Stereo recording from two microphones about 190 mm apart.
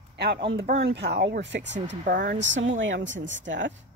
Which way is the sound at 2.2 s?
45° right (ahead or behind).